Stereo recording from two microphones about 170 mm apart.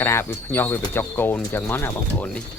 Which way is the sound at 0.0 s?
15° left (ahead or behind).